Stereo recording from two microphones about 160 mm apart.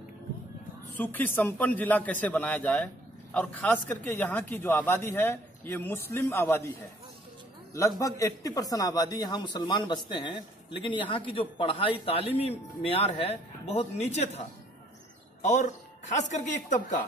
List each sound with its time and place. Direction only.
0.9 s a man's voice: 10° left (ahead or behind)
8.0 s speech: 20° left (ahead or behind); by 14.4 s 45° left (ahead or behind)
15.4 s speech: 50° left (ahead or behind)